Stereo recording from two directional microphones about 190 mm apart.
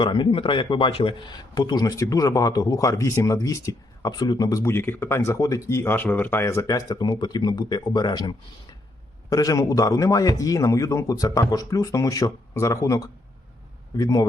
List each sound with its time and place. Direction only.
0.0 s a man's voice: 25° left (ahead or behind)